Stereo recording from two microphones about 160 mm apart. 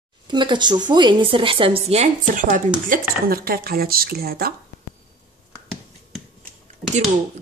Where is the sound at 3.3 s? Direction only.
70° right (ahead or behind).